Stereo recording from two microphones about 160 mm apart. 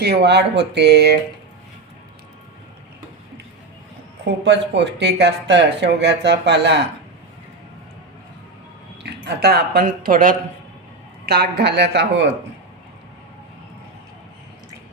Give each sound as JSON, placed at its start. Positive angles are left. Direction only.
{"t": 0.0, "sound": "speech", "side_deg": -90}
{"t": 4.4, "sound": "speech", "side_deg": -90}
{"t": 9.0, "sound": "speech", "side_deg": -90}
{"t": 11.3, "sound": "speech", "side_deg": -85}